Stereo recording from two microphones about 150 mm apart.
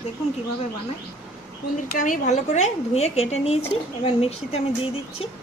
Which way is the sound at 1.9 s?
55° left (ahead or behind).